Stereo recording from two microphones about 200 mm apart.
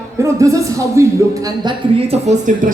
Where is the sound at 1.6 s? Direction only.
30° right (ahead or behind).